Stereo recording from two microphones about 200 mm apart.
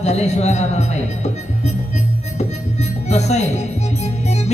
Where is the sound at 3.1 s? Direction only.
35° left (ahead or behind).